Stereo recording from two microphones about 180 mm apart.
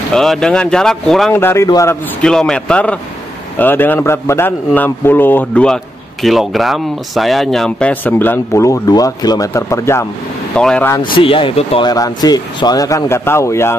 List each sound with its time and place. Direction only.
0.1 s speech: 5° left (ahead or behind)
1.3 s speech: 15° left (ahead or behind)
10.5 s speech: 5° left (ahead or behind)
11.1 s speech: 30° left (ahead or behind)